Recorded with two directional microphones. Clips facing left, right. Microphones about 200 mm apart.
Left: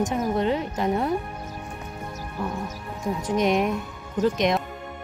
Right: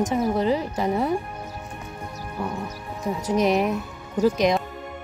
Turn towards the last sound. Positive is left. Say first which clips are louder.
# right 2 dB
turn(degrees=0)  # may be behind; listen again after turning